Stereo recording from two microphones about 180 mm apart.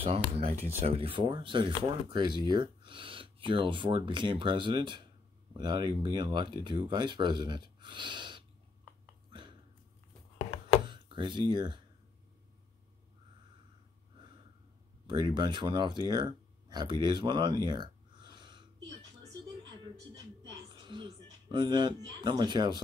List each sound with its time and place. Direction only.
0.0 s speech: 30° right (ahead or behind)
9.3 s a sound: 25° right (ahead or behind)
10.4 s chopping: 35° left (ahead or behind)
10.9 s speech: 25° right (ahead or behind)
15.0 s speech: 25° right (ahead or behind)
20.6 s a sound: 25° right (ahead or behind)
22.2 s speech: 25° right (ahead or behind)